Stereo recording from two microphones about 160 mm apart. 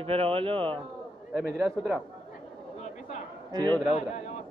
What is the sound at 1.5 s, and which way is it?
Speech, 5° right (ahead or behind).